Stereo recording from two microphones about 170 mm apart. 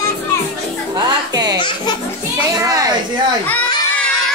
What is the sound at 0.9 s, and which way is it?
Music, 25° right (ahead or behind).